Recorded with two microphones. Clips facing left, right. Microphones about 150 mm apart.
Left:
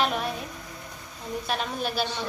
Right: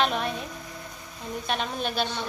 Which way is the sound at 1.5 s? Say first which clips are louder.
Right 1 dB; 5° left (ahead or behind).